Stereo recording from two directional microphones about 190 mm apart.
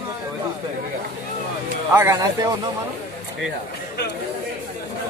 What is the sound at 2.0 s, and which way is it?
Speech, 15° right (ahead or behind).